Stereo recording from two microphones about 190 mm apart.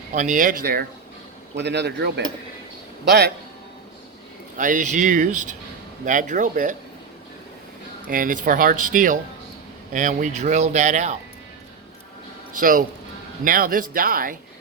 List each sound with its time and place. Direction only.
0.1 s speech: 40° right (ahead or behind)
1.5 s cutlery: 65° right (ahead or behind)
4.5 s speech: 45° right (ahead or behind)
8.1 s speech: 45° right (ahead or behind)
12.5 s speech: 45° right (ahead or behind)